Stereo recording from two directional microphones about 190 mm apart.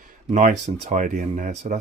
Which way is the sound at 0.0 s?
45° right (ahead or behind).